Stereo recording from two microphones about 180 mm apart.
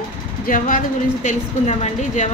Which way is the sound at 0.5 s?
50° left (ahead or behind).